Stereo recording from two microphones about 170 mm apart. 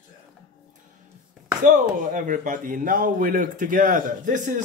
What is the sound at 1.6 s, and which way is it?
Speech, 50° right (ahead or behind).